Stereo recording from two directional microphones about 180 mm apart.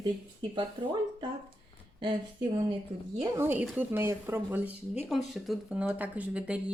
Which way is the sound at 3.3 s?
10° right (ahead or behind).